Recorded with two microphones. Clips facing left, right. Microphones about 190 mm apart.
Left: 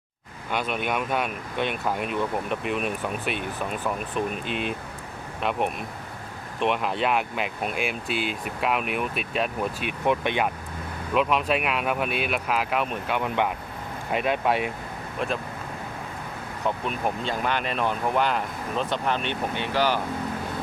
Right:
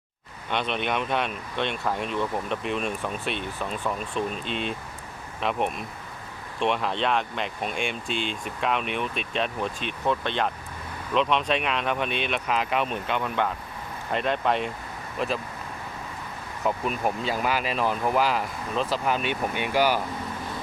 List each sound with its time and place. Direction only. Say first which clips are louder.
0.5 s speech: even; 5° left (ahead or behind)
13.2 s speech: left 2 dB; 15° left (ahead or behind); by 15.3 s centre (ahead or behind)
16.6 s speech: right 1 dB; 5° right (ahead or behind)